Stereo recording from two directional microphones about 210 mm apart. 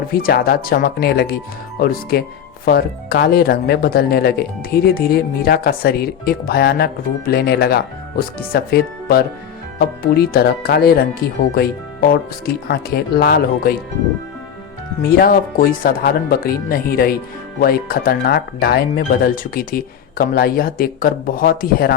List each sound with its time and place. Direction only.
0.1 s speech: 45° left (ahead or behind)
15.0 s speech: 45° left (ahead or behind)